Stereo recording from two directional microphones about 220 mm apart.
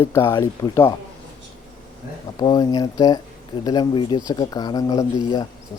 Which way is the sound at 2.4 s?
20° left (ahead or behind).